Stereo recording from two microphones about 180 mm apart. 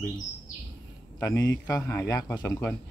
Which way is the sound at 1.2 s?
15° left (ahead or behind).